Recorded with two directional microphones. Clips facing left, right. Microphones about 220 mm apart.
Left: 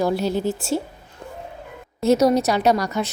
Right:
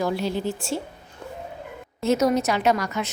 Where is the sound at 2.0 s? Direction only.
35° left (ahead or behind).